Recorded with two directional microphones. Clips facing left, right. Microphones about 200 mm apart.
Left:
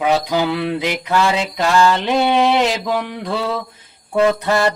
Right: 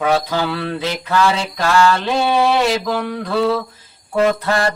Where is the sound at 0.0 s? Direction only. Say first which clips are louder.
Left 1 dB; 15° left (ahead or behind).